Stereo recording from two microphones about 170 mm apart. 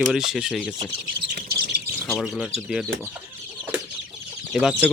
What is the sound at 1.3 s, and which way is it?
Squawk, 65° right (ahead or behind).